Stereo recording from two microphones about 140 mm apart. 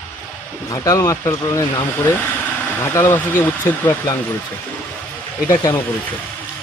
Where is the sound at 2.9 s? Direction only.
20° left (ahead or behind).